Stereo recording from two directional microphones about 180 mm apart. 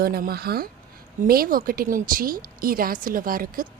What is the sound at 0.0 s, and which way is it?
A woman's voice, 55° right (ahead or behind).